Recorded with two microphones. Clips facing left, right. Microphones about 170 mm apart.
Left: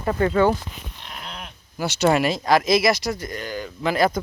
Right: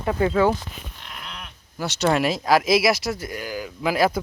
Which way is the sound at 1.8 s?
5° left (ahead or behind).